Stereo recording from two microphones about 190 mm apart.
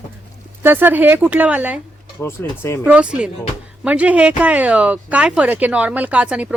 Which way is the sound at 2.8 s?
5° right (ahead or behind).